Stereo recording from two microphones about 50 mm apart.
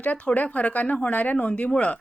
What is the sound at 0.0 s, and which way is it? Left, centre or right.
A woman's voice, left.